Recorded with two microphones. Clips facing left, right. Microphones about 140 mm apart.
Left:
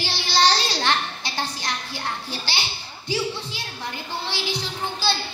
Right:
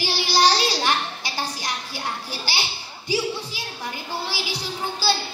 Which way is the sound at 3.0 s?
10° right (ahead or behind).